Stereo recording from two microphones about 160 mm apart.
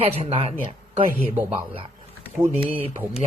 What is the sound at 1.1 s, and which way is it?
Speech, 10° right (ahead or behind).